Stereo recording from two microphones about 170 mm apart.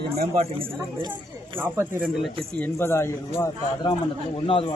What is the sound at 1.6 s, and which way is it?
Speech, 10° right (ahead or behind).